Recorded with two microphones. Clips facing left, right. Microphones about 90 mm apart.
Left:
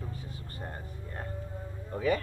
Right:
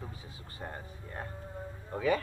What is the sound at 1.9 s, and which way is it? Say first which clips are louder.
Speech: left 1 dB; 35° right (ahead or behind).